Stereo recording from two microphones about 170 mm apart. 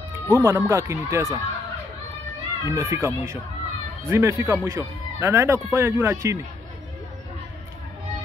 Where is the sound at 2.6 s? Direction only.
15° right (ahead or behind).